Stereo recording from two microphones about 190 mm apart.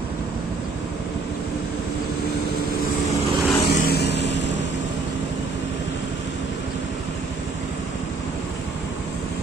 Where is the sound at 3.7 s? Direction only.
60° left (ahead or behind).